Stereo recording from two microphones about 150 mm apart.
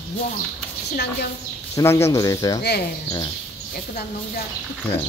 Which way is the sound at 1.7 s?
20° left (ahead or behind).